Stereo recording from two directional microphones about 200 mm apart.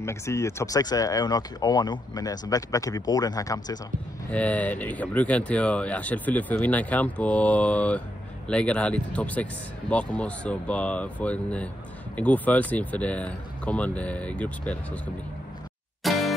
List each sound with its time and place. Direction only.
0.0 s speech: 15° left (ahead or behind)
4.3 s speech: 5° left (ahead or behind)
16.0 s music: centre (ahead or behind)